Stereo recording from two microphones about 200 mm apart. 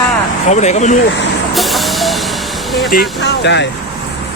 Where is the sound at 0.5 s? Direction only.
35° left (ahead or behind).